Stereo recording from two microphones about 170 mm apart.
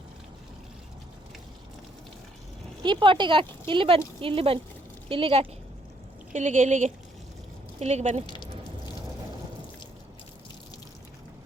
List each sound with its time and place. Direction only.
2.8 s speech: 30° right (ahead or behind)
6.3 s speech: 45° right (ahead or behind)